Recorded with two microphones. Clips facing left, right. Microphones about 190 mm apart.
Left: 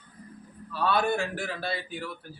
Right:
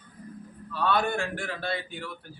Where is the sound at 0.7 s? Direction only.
5° left (ahead or behind).